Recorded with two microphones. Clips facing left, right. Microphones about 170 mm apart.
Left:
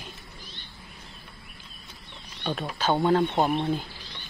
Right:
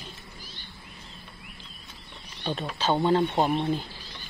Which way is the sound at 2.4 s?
Centre (ahead or behind).